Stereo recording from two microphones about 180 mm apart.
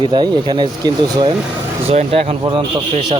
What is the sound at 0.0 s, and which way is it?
Speech, 25° right (ahead or behind).